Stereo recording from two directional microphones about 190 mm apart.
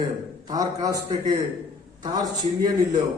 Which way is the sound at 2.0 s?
20° right (ahead or behind).